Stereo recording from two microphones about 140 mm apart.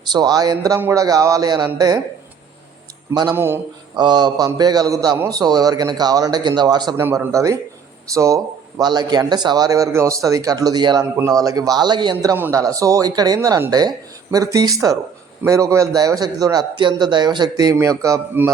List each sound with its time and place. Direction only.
0.0 s a man's voice: 30° right (ahead or behind)
3.3 s a man's voice: 15° right (ahead or behind)
3.9 s a man's voice: 30° right (ahead or behind)
6.9 s a man's voice: 15° right (ahead or behind); by 12.1 s 30° right (ahead or behind)
12.1 s a man's voice: 20° right (ahead or behind)